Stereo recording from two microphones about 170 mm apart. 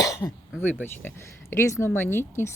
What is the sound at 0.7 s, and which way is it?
Speech, 10° left (ahead or behind).